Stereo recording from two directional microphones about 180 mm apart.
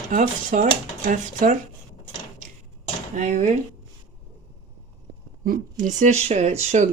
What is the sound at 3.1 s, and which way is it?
Speech, 40° right (ahead or behind).